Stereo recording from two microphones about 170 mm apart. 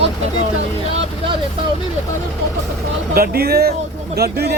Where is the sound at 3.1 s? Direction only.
60° right (ahead or behind).